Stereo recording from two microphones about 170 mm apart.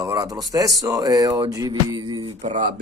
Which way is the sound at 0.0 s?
20° right (ahead or behind).